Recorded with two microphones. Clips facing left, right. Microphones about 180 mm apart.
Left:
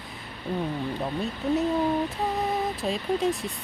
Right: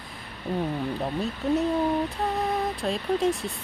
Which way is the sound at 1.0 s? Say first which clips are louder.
Right 1 dB; centre (ahead or behind).